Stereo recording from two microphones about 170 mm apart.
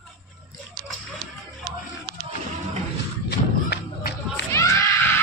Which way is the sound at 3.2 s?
70° left (ahead or behind).